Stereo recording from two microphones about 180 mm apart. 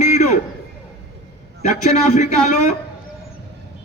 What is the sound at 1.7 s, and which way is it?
Speech, 40° left (ahead or behind).